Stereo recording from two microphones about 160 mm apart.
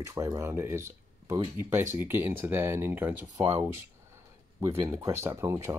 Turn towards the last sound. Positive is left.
turn(degrees=-20)  # may be behind; listen again after turning